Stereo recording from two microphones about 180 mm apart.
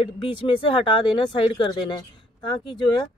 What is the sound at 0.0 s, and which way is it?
Speech, 25° left (ahead or behind).